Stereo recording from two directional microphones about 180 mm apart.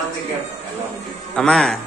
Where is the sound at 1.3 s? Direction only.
5° left (ahead or behind).